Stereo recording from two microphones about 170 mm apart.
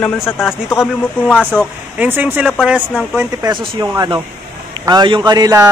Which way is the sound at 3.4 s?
20° right (ahead or behind).